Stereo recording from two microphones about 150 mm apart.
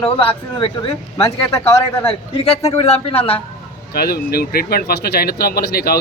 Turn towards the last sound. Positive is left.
turn(degrees=90)